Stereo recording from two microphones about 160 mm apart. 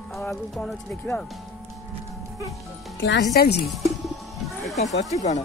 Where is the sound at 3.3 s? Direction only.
80° left.